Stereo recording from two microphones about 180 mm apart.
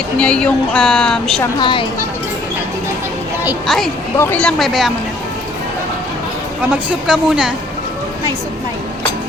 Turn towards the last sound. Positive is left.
turn(degrees=-5)  # may be behind; listen again after turning